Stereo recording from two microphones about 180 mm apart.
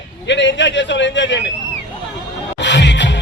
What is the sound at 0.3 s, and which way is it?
A man's voice, 80° left.